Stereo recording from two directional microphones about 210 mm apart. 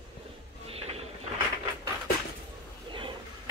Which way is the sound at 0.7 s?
30° right (ahead or behind).